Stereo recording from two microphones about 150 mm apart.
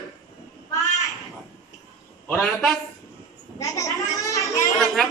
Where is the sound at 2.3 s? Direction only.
Centre (ahead or behind).